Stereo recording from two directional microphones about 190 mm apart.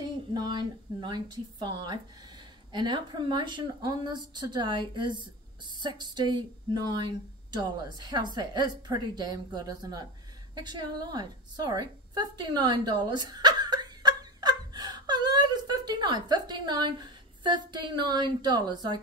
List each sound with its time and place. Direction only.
0.0 s a woman's voice: 20° right (ahead or behind)